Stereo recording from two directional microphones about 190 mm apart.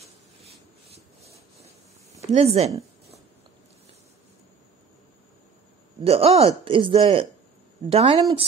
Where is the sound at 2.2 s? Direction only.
35° right (ahead or behind).